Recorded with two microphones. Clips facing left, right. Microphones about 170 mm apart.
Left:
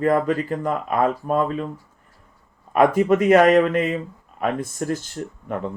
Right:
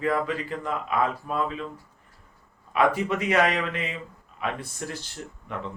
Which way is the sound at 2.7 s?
45° left (ahead or behind).